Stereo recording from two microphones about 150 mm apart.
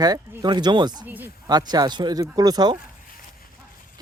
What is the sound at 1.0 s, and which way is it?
Speech, 10° right (ahead or behind).